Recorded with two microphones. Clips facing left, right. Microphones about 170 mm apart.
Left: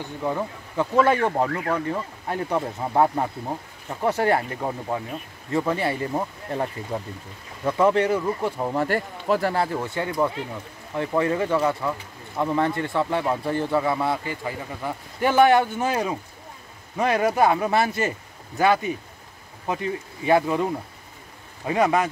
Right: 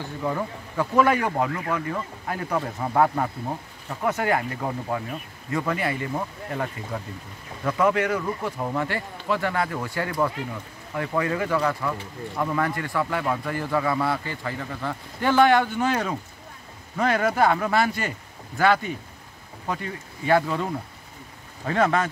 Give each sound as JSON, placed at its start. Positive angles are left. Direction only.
{"t": 0.0, "sound": "speech", "side_deg": 15}
{"t": 0.9, "sound": "a man's voice", "side_deg": 25}
{"t": 4.0, "sound": "speech", "side_deg": 30}
{"t": 4.6, "sound": "speech", "side_deg": 10}
{"t": 5.5, "sound": "a man's voice", "side_deg": 25}
{"t": 8.7, "sound": "a man's voice", "side_deg": 45}
{"t": 19.7, "sound": "a man's voice", "side_deg": 20}
{"t": 21.6, "sound": "speech", "side_deg": 15}